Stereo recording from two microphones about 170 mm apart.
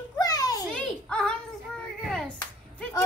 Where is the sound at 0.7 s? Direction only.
5° left (ahead or behind).